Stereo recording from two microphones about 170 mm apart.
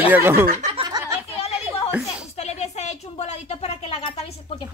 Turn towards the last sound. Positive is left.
turn(degrees=35)  # may be behind; listen again after turning